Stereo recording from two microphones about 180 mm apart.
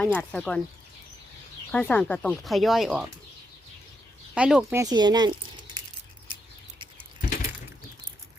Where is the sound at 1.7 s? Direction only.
10° left (ahead or behind).